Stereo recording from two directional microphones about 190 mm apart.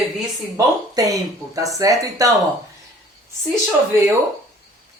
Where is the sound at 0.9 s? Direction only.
20° right (ahead or behind).